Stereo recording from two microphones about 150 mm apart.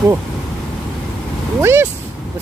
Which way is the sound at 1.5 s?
20° right (ahead or behind).